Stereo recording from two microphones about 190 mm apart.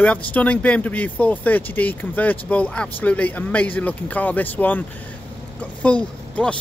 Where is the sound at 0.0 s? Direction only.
5° left (ahead or behind).